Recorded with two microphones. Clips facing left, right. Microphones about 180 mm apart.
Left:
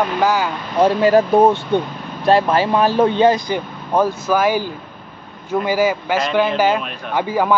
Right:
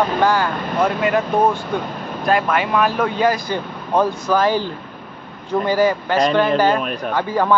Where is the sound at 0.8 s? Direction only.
30° left (ahead or behind).